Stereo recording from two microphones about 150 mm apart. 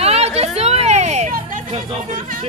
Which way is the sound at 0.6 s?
45° right (ahead or behind).